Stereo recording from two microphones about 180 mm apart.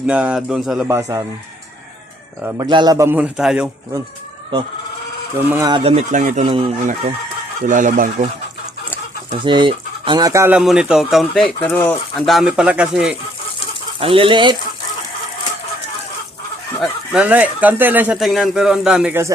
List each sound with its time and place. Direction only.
0.1 s speech: 5° right (ahead or behind)
0.9 s speech: 15° right (ahead or behind)
2.6 s speech: 25° right (ahead or behind); by 3.7 s 5° right (ahead or behind)
5.5 s speech: 15° right (ahead or behind)
5.7 s speech: 35° right (ahead or behind)
7.6 s speech: 45° right (ahead or behind)
9.4 s speech: 25° right (ahead or behind)
10.6 s speech: 5° right (ahead or behind)
11.6 s speech: 10° left (ahead or behind)
14.0 s speech: 30° right (ahead or behind)
16.8 s speech: 5° right (ahead or behind)